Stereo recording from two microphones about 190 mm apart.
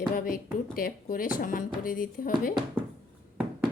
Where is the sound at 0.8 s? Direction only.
50° left (ahead or behind).